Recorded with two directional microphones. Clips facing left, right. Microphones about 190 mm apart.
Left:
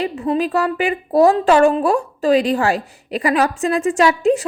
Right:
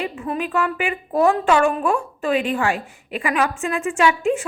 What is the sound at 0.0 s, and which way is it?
A woman's voice, 35° left (ahead or behind).